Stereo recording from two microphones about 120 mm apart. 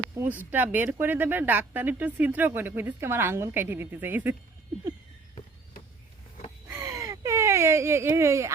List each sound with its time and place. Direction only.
0.5 s speech: 15° right (ahead or behind)
6.7 s whimper: 25° right (ahead or behind)